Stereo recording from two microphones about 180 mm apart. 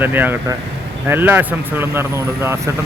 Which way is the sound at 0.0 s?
10° right (ahead or behind).